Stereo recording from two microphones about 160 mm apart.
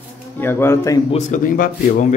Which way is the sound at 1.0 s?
45° left (ahead or behind).